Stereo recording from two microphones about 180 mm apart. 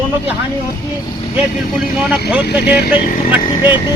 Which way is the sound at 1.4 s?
5° right (ahead or behind).